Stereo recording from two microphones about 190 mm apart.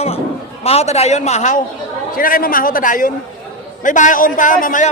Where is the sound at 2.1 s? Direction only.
50° left (ahead or behind).